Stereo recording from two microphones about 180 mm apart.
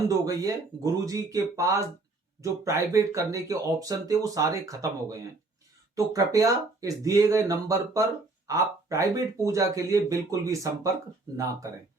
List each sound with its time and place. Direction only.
0.3 s speech: 20° right (ahead or behind)